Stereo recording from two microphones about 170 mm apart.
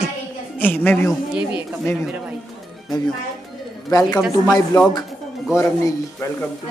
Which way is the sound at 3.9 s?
20° left (ahead or behind).